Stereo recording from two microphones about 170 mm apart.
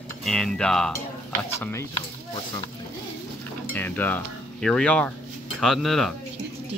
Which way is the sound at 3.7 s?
10° left (ahead or behind).